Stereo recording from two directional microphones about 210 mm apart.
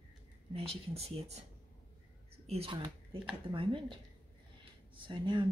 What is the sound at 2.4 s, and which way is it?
Speech, 30° right (ahead or behind).